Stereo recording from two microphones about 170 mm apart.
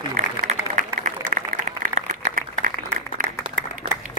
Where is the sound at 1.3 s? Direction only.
50° right (ahead or behind).